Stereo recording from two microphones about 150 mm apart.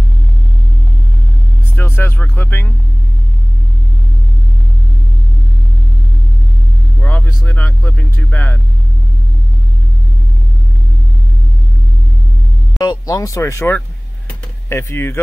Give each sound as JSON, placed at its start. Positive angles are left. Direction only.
{"t": 1.8, "sound": "speech", "side_deg": 15}
{"t": 7.0, "sound": "speech", "side_deg": 10}
{"t": 12.7, "sound": "speech", "side_deg": 30}